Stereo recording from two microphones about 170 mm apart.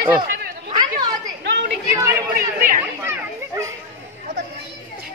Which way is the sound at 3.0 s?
15° right (ahead or behind).